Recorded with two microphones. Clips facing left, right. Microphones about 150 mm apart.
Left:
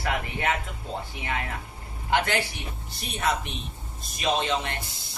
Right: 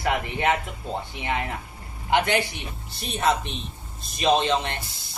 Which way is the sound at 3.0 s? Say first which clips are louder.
Right 4 dB; 30° right (ahead or behind).